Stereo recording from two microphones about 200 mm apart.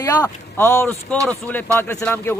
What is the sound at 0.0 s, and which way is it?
Speech, 15° left (ahead or behind).